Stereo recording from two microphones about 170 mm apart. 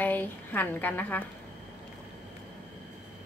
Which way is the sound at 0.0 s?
10° left (ahead or behind).